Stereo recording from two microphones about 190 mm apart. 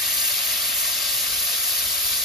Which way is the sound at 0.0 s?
Centre (ahead or behind).